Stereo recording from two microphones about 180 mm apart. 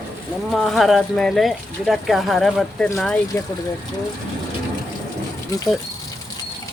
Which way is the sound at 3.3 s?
15° left (ahead or behind).